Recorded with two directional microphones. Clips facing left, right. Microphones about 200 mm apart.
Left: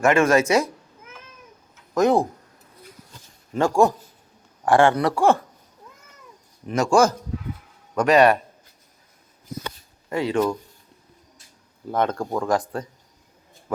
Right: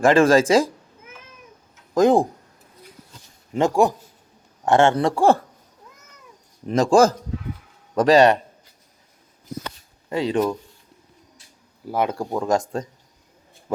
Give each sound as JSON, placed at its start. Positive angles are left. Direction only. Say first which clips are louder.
{"t": 0.0, "sound": "speech", "louder": "right 3 dB", "side_deg": -30}
{"t": 2.0, "sound": "speech", "louder": "right 3 dB", "side_deg": -30}
{"t": 3.5, "sound": "speech", "louder": "even", "side_deg": -20}
{"t": 6.7, "sound": "speech", "louder": "right 3 dB", "side_deg": -35}
{"t": 10.1, "sound": "speech", "louder": "right 1 dB", "side_deg": -20}
{"t": 11.9, "sound": "speech", "louder": "even", "side_deg": -10}